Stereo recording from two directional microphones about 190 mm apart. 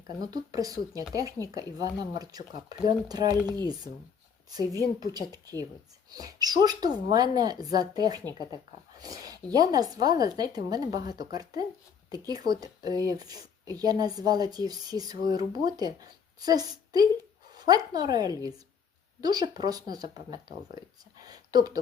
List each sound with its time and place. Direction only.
0.2 s speech: 20° right (ahead or behind)
8.4 s speech: 20° left (ahead or behind)
9.0 s speech: 20° right (ahead or behind)